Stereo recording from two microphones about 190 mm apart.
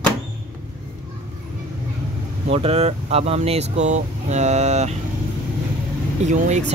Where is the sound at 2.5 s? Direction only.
30° right (ahead or behind).